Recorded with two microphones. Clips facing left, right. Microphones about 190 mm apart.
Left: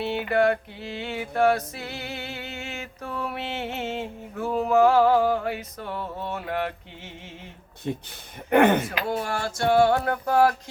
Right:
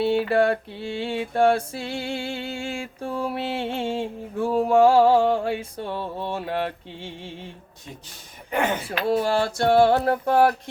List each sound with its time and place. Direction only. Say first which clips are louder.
0.0 s mantra: right 3 dB; 30° right (ahead or behind)
8.4 s speech: left 6 dB; 60° left (ahead or behind)
9.0 s mantra: right 6 dB; 35° right (ahead or behind)